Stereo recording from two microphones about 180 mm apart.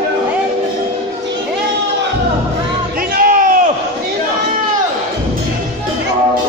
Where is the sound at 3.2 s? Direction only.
50° right (ahead or behind).